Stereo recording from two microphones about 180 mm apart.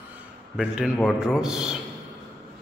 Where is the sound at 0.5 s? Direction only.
5° right (ahead or behind).